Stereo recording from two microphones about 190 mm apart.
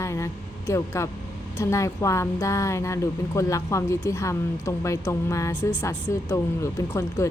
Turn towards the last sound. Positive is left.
turn(degrees=15)  # may be behind; listen again after turning